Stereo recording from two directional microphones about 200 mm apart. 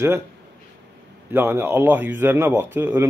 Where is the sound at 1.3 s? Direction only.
10° right (ahead or behind).